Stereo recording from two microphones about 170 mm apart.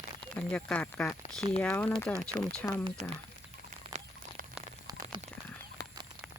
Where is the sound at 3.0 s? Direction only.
45° right (ahead or behind).